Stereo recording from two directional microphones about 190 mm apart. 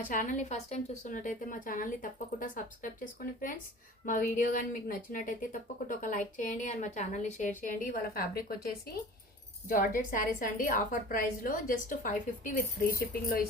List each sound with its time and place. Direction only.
0.1 s a woman's voice: 40° left (ahead or behind)
4.0 s a woman's voice: 45° left (ahead or behind)